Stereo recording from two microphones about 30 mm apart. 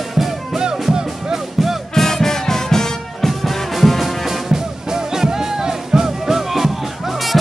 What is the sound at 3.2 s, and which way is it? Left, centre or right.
Music, centre.